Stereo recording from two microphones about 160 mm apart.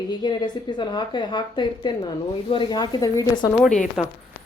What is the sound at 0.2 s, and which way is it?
Speech, 25° left (ahead or behind).